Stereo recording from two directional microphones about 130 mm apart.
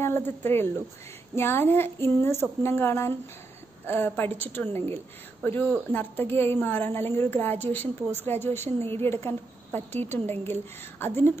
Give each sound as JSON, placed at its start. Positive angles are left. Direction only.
{"t": 0.0, "sound": "a woman's voice", "side_deg": 15}